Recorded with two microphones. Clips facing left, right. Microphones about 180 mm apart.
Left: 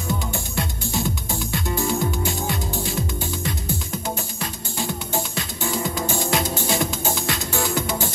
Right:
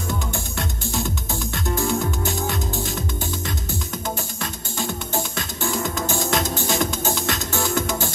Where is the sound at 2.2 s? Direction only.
45° right (ahead or behind).